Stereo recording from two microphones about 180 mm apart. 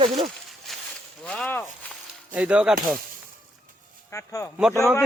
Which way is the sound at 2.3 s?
5° right (ahead or behind).